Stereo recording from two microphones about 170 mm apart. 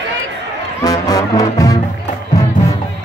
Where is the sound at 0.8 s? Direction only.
20° left (ahead or behind).